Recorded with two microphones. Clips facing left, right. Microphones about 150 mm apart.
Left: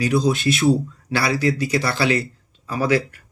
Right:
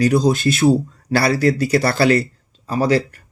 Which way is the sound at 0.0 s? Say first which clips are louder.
Right 4 dB; 40° right (ahead or behind).